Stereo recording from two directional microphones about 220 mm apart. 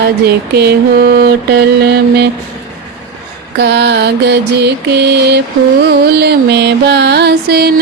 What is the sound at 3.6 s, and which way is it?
Music, 50° right (ahead or behind).